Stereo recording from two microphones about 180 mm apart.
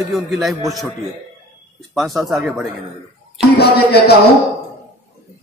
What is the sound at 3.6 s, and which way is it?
Speech, 60° left (ahead or behind).